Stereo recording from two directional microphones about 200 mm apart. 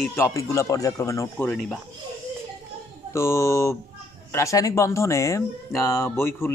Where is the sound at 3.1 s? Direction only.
15° left (ahead or behind).